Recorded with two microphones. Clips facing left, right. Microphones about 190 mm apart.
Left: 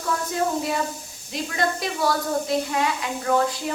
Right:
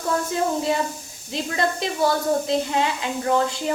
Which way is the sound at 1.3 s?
30° right (ahead or behind).